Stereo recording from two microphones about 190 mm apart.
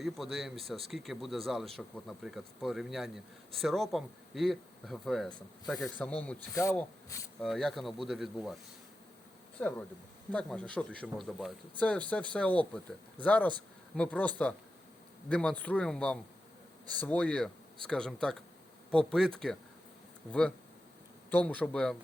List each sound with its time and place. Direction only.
0.0 s speech: centre (ahead or behind); by 6.7 s 15° left (ahead or behind)
7.4 s speech: centre (ahead or behind)
9.6 s speech: 5° left (ahead or behind)
21.2 s speech: 10° left (ahead or behind)